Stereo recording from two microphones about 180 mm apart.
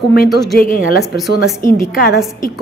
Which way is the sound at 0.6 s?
50° left (ahead or behind).